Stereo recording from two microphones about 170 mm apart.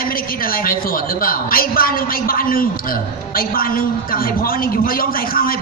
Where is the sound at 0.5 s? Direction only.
60° left (ahead or behind).